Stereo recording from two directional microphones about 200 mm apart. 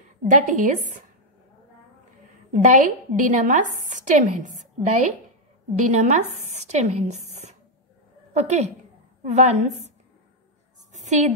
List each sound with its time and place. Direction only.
0.2 s a woman's voice: 40° right (ahead or behind)
2.5 s a woman's voice: 35° right (ahead or behind)
10.9 s a sound: 35° right (ahead or behind)